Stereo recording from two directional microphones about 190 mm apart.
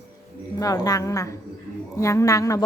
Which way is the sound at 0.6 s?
20° left (ahead or behind).